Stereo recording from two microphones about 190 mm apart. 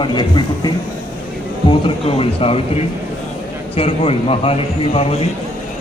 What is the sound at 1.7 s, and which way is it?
A man's voice, 30° left (ahead or behind).